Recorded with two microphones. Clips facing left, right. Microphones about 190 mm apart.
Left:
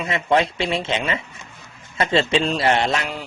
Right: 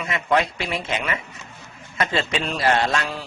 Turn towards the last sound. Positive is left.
turn(degrees=20)  # may be behind; listen again after turning